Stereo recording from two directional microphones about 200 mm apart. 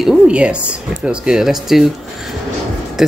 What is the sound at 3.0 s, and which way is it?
Speech, centre (ahead or behind).